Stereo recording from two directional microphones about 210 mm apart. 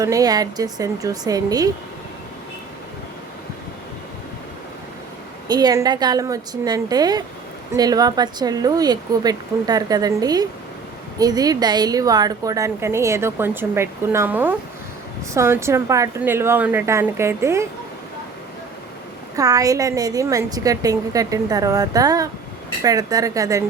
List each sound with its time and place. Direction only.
0.0 s a woman's voice: 15° right (ahead or behind)
5.5 s a woman's voice: 20° right (ahead or behind)
19.4 s a woman's voice: 15° right (ahead or behind)